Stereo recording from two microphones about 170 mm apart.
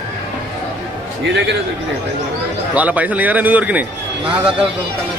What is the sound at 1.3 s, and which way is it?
Speech, 90° right.